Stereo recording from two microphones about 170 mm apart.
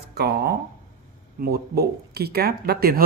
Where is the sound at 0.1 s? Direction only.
65° right (ahead or behind).